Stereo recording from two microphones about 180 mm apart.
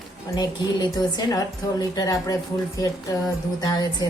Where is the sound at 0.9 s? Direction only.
20° left (ahead or behind).